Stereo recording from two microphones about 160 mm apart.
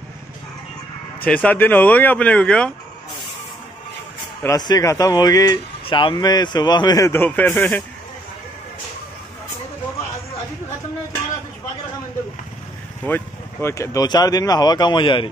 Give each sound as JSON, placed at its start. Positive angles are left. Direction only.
{"t": 1.2, "sound": "speech", "side_deg": 10}
{"t": 4.4, "sound": "speech", "side_deg": 20}
{"t": 13.0, "sound": "speech", "side_deg": 15}